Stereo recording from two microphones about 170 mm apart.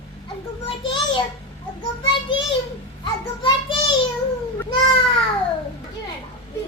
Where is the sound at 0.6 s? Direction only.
30° left (ahead or behind).